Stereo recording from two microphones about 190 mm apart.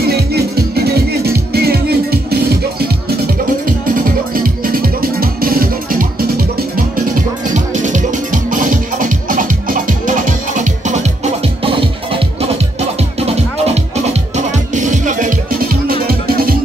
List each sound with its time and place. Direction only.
0.0 s music: 55° right (ahead or behind)